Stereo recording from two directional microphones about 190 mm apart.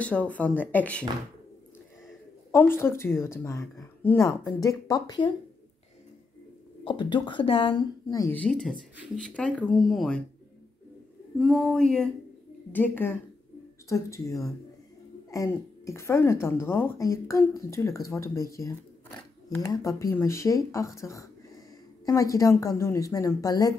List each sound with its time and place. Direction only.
0.0 s speech: 5° left (ahead or behind)
2.5 s speech: 10° left (ahead or behind)
6.8 s speech: 25° left (ahead or behind)
8.4 s speech: 5° left (ahead or behind)
11.3 s speech: centre (ahead or behind); by 23.7 s 20° left (ahead or behind)